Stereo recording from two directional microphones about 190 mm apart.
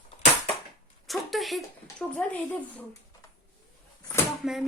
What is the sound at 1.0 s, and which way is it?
Speech, centre (ahead or behind).